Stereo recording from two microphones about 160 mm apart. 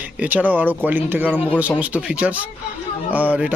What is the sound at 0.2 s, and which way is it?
Speech, 10° right (ahead or behind).